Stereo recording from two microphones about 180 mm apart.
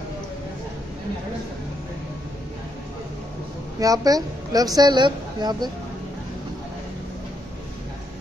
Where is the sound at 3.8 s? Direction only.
20° right (ahead or behind).